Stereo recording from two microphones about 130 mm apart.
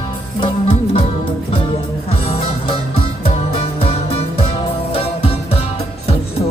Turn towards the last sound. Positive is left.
turn(degrees=45)  # may be behind; listen again after turning